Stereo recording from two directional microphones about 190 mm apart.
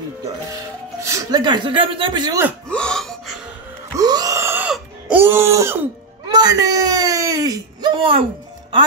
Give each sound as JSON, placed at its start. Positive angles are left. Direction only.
{"t": 1.0, "sound": "speech", "side_deg": -20}
{"t": 2.7, "sound": "gasp", "side_deg": 5}
{"t": 3.9, "sound": "a sound", "side_deg": -20}
{"t": 5.1, "sound": "music", "side_deg": -10}
{"t": 6.2, "sound": "whimper", "side_deg": -20}